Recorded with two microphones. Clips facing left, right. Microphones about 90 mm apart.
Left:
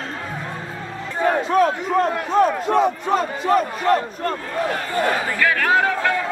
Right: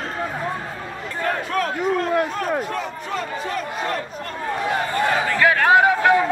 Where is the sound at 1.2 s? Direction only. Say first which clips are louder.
Left 6 dB; 20° left (ahead or behind).